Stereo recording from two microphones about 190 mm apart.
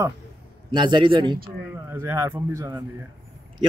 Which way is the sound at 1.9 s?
10° right (ahead or behind).